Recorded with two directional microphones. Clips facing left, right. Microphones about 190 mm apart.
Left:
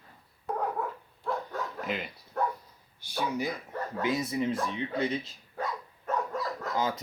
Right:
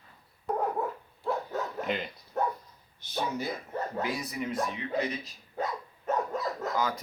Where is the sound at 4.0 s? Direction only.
25° left (ahead or behind).